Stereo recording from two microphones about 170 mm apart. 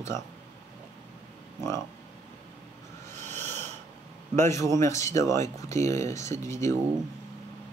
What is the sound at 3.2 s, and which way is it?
Snort, 40° right (ahead or behind).